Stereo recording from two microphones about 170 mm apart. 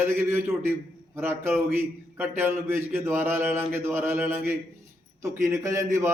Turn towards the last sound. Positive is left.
turn(degrees=-15)  # may be behind; listen again after turning